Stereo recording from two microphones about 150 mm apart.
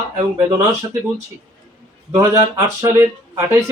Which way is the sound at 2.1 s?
20° right (ahead or behind).